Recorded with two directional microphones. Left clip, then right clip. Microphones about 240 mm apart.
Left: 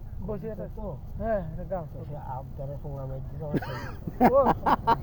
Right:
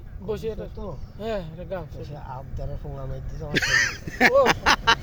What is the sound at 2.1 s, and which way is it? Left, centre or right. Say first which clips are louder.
Speech: left 2 dB; centre.